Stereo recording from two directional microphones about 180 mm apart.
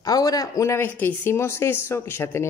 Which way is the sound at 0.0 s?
20° left (ahead or behind).